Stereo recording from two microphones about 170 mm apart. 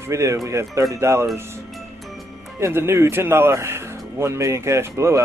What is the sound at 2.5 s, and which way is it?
Speech, 15° right (ahead or behind).